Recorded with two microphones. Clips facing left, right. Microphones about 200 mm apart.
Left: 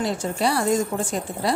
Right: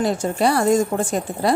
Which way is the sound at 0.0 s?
50° right (ahead or behind).